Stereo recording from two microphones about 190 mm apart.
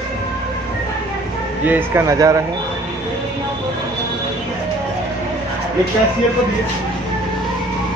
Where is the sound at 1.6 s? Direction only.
10° right (ahead or behind).